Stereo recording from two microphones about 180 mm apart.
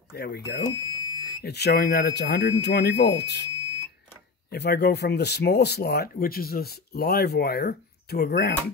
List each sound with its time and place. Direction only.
0.1 s speech: 60° left (ahead or behind)
0.7 s fire alarm: 20° left (ahead or behind)
1.4 s speech: 65° left (ahead or behind)
4.5 s speech: 65° left (ahead or behind)